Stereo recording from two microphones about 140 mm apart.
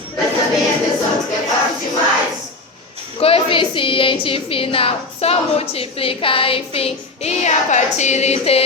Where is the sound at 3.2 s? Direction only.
40° left (ahead or behind).